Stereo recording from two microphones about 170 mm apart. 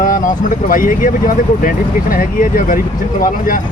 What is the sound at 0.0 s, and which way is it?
Speech, 55° left (ahead or behind).